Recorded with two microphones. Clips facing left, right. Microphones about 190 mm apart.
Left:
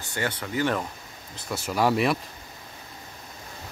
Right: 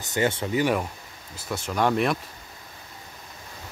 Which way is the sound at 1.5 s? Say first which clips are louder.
Even; 5° left (ahead or behind).